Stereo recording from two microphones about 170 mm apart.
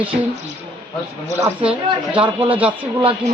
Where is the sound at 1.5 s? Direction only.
10° right (ahead or behind).